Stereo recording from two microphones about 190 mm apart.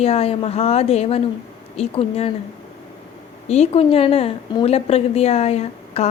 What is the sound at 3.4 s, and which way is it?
A woman's voice, 35° left (ahead or behind).